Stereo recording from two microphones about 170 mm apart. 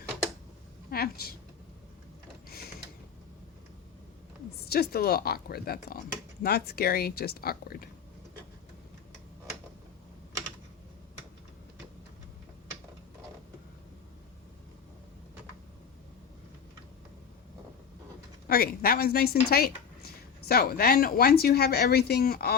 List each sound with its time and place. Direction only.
0.9 s a woman's voice: 65° left (ahead or behind)
4.7 s speech: 65° left (ahead or behind)
18.4 s speech: 60° left (ahead or behind)